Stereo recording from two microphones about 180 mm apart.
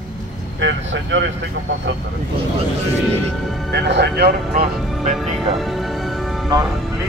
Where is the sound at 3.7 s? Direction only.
70° right (ahead or behind).